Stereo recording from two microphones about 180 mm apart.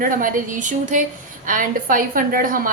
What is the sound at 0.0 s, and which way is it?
A woman's voice, 50° right (ahead or behind).